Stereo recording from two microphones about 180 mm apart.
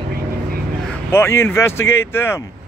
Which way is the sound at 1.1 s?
15° left (ahead or behind).